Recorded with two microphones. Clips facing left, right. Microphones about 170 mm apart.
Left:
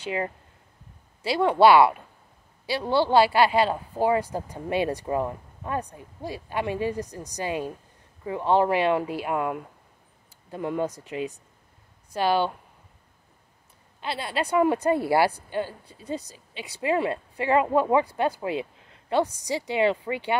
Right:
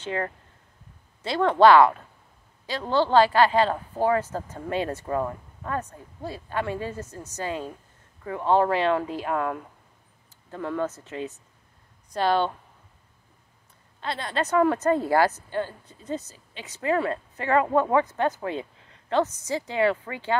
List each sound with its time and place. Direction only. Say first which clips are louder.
0.0 s speech: even; 15° left (ahead or behind)
14.0 s speech: even; 10° left (ahead or behind)